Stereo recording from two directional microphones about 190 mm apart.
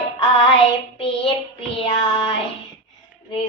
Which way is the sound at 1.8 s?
30° left (ahead or behind).